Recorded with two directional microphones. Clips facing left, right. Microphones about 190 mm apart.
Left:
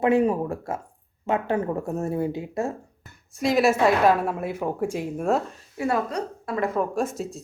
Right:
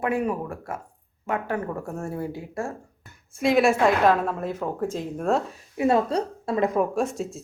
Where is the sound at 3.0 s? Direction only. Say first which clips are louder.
Right 2 dB; centre (ahead or behind).